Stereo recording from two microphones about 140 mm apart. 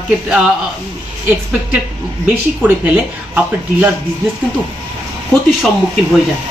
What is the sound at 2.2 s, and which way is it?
Speech, 10° right (ahead or behind).